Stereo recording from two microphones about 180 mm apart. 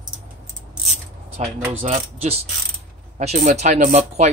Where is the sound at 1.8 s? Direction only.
35° right (ahead or behind).